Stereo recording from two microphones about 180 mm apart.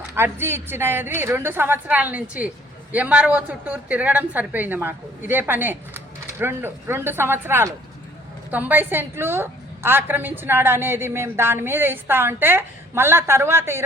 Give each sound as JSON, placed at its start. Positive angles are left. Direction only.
{"t": 0.2, "sound": "a woman's voice", "side_deg": -15}